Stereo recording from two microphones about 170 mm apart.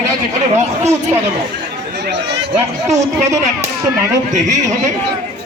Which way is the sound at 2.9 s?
40° right (ahead or behind).